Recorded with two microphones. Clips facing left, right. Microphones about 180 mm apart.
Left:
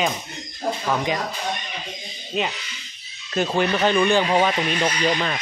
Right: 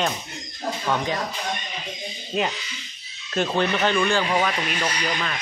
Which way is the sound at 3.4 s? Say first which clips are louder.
Left 2 dB; 10° left (ahead or behind).